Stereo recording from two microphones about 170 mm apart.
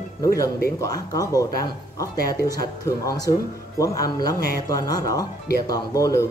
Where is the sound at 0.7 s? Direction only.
20° left (ahead or behind).